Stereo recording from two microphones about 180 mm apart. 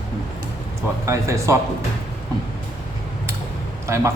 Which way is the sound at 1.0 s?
15° right (ahead or behind).